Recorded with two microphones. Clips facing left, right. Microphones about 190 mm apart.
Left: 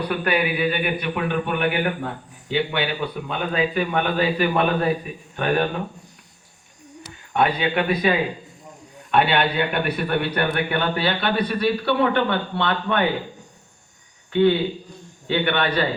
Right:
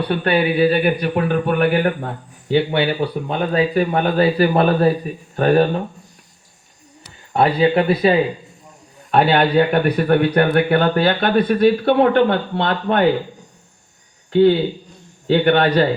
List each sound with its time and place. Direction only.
0.0 s a man's voice: 30° right (ahead or behind)
7.3 s a man's voice: 35° right (ahead or behind)
15.3 s a man's voice: 40° right (ahead or behind)